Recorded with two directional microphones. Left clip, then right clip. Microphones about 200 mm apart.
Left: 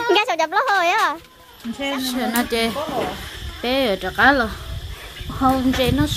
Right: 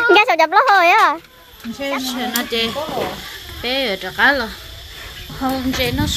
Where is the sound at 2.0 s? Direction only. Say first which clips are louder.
Even; 30° left (ahead or behind).